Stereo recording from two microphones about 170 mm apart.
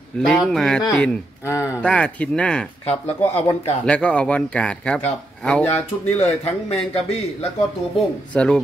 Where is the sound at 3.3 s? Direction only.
40° left (ahead or behind).